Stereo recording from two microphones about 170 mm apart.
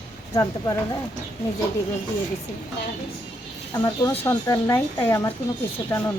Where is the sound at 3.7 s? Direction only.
20° left (ahead or behind).